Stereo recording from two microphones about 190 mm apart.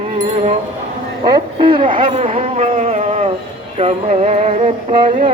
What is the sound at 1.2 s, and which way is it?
Speech, 25° right (ahead or behind).